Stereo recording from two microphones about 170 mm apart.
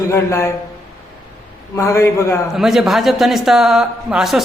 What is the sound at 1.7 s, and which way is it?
Speech, 15° left (ahead or behind).